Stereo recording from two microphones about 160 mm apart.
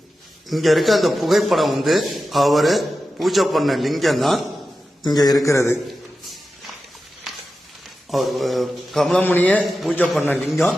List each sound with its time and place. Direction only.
0.4 s a man's voice: centre (ahead or behind)
5.0 s a man's voice: 25° left (ahead or behind)
8.1 s a man's voice: centre (ahead or behind)
10.5 s a man's voice: centre (ahead or behind)